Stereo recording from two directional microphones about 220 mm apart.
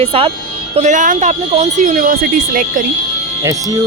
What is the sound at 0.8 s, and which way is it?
Speech, 35° right (ahead or behind).